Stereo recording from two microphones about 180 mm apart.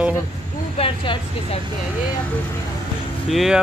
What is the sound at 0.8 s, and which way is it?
Speech, 30° left (ahead or behind).